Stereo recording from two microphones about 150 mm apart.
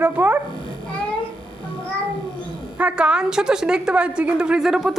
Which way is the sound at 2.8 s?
5° right (ahead or behind).